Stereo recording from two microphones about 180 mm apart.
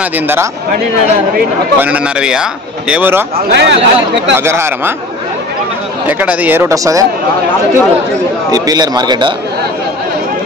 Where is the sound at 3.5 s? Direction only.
75° right (ahead or behind).